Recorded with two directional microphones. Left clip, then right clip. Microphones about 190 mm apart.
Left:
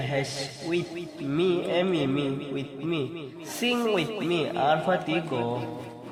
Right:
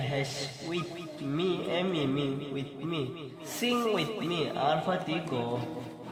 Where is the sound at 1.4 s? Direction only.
25° left (ahead or behind).